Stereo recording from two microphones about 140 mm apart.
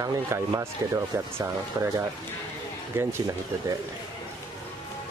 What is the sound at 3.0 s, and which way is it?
Speech, 20° right (ahead or behind).